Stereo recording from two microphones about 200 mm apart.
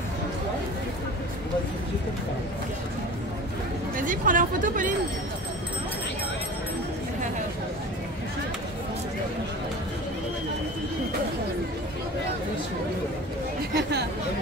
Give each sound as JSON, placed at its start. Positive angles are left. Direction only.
{"t": 3.9, "sound": "speech", "side_deg": -40}
{"t": 13.7, "sound": "chatter", "side_deg": -55}